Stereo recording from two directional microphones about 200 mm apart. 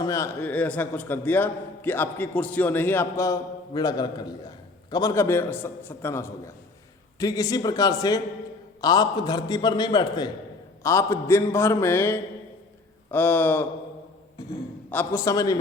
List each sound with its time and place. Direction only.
0.0 s a man's voice: 15° left (ahead or behind)
14.8 s a man's voice: 10° left (ahead or behind)